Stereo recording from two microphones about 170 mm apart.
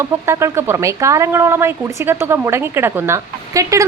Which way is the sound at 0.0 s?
15° right (ahead or behind).